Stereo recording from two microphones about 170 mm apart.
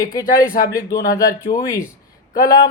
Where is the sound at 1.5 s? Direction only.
45° left (ahead or behind).